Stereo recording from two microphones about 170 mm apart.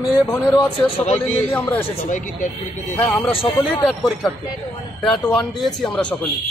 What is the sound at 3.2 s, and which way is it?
Speech, 35° left (ahead or behind).